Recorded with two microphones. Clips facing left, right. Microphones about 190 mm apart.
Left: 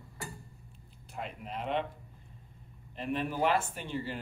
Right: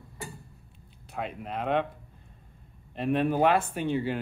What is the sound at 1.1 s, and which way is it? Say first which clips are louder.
Speech: right 6 dB; 65° right (ahead or behind).